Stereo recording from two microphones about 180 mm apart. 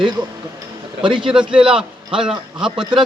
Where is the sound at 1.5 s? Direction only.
5° right (ahead or behind).